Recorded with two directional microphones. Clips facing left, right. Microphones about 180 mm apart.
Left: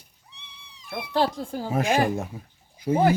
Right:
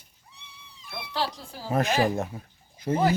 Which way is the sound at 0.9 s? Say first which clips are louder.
Left 7 dB; 50° left (ahead or behind).